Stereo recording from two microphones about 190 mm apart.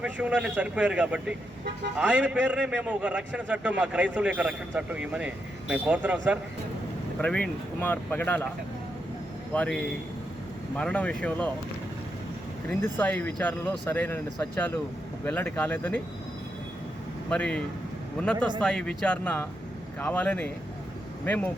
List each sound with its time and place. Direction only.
0.0 s a man's voice: 5° right (ahead or behind)
7.2 s speech: 5° left (ahead or behind)
9.5 s a man's voice: 5° left (ahead or behind)
12.6 s speech: 10° left (ahead or behind)
17.2 s speech: 5° left (ahead or behind)
18.3 s speech: 25° right (ahead or behind)
18.6 s speech: 5° left (ahead or behind)